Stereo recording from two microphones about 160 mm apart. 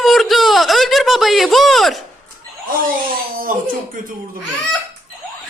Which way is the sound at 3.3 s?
60° right (ahead or behind).